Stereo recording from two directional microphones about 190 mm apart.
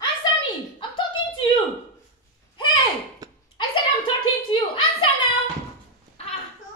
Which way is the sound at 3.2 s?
20° right (ahead or behind).